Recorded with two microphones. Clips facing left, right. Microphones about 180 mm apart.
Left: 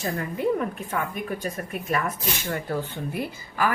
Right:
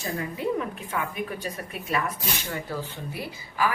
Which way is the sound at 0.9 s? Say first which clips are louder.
Left 2 dB; 45° left (ahead or behind).